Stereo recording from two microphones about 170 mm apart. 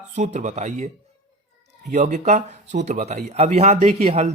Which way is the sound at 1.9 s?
45° right (ahead or behind).